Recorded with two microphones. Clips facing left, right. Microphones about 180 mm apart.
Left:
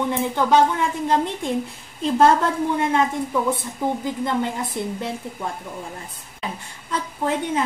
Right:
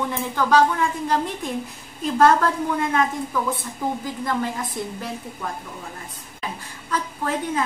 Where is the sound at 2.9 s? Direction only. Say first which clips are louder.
Left 2 dB; 25° left (ahead or behind).